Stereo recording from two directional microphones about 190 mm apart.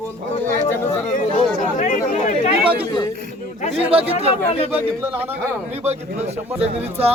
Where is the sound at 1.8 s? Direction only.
40° left (ahead or behind).